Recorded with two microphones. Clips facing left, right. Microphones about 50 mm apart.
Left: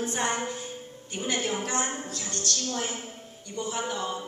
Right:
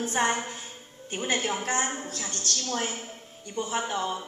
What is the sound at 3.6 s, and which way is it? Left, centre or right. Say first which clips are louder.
Speech: right 2 dB; right.